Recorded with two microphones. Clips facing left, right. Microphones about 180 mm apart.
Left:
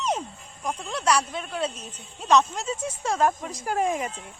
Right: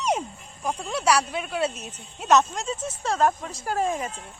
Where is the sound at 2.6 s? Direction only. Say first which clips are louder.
Even; 10° left (ahead or behind).